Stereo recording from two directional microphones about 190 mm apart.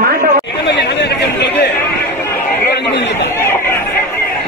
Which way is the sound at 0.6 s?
65° left (ahead or behind).